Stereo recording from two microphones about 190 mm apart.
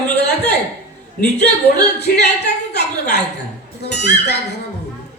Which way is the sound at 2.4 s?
60° left (ahead or behind).